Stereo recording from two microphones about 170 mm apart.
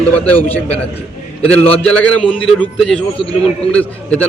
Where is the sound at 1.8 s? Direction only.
5° left (ahead or behind).